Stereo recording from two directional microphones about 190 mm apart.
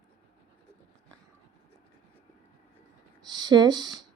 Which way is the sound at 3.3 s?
20° right (ahead or behind).